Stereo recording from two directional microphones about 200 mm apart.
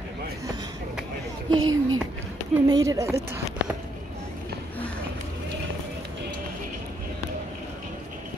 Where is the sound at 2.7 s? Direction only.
15° right (ahead or behind).